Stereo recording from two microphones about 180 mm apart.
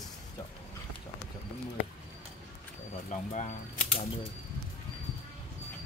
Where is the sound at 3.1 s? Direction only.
40° left (ahead or behind).